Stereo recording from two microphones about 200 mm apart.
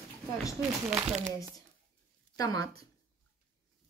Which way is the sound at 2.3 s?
20° left (ahead or behind).